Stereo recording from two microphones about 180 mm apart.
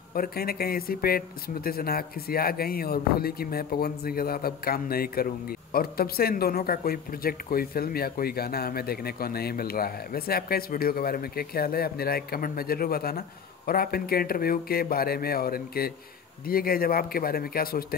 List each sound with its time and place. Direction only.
0.1 s speech: 55° left (ahead or behind)